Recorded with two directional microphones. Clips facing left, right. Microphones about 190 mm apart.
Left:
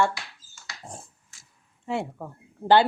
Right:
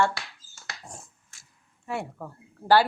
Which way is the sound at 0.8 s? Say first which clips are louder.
Left 3 dB; 30° left (ahead or behind).